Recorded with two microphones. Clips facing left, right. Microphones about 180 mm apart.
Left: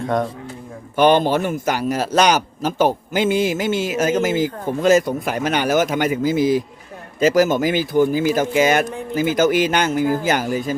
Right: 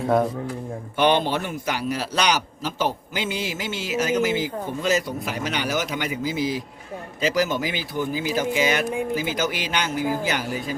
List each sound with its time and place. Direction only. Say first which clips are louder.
0.0 s a man's voice: right 1 dB; 5° right (ahead or behind)
0.9 s a man's voice: left 6 dB; 45° left (ahead or behind)